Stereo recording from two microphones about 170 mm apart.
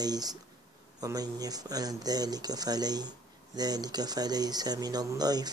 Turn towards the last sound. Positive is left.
turn(degrees=-25)  # may be behind; listen again after turning